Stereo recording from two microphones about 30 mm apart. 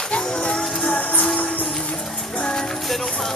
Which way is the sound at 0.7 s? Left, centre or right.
Left.